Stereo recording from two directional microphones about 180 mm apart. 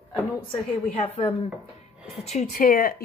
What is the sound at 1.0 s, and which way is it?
A woman's voice, 30° left (ahead or behind).